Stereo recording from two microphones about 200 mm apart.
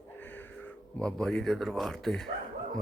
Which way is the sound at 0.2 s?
10° left (ahead or behind).